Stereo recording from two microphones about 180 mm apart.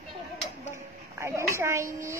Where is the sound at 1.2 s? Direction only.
15° right (ahead or behind).